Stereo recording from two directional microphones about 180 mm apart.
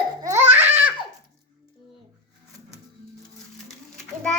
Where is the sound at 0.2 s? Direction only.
15° right (ahead or behind).